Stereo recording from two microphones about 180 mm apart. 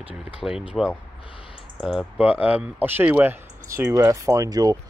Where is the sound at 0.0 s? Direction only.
5° right (ahead or behind).